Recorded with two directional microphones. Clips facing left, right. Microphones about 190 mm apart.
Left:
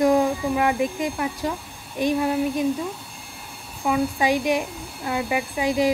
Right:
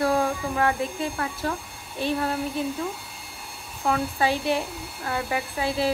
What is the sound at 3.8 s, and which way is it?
Speech, 10° left (ahead or behind).